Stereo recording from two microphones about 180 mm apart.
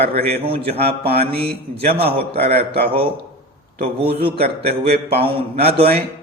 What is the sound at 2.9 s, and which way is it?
Speech, 30° right (ahead or behind).